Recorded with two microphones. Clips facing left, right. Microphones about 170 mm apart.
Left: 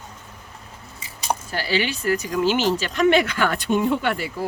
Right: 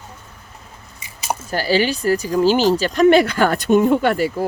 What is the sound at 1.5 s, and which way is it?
Speech, 40° right (ahead or behind).